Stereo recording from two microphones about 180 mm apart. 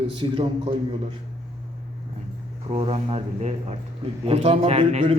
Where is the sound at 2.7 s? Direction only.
35° right (ahead or behind).